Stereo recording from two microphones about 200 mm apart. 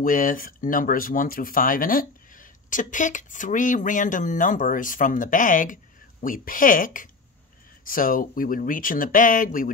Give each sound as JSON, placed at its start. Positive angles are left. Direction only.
{"t": 0.0, "sound": "speech", "side_deg": 40}